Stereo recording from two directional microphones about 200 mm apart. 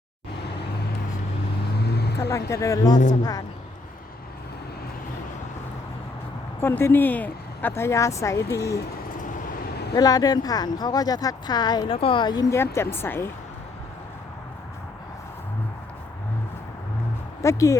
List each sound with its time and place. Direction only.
1.8 s vehicle: 55° left (ahead or behind)
2.5 s speech: 15° left (ahead or behind)
6.6 s speech: 10° left (ahead or behind)
9.1 s vehicle: 40° left (ahead or behind)
9.9 s speech: 20° left (ahead or behind)
17.4 s speech: 15° left (ahead or behind)